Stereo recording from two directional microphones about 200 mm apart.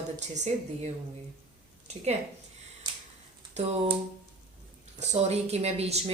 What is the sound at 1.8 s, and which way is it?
Speech, 35° right (ahead or behind).